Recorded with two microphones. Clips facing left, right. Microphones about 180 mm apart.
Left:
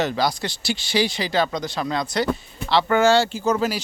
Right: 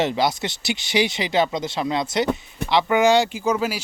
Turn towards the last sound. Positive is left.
turn(degrees=-10)  # may be behind; listen again after turning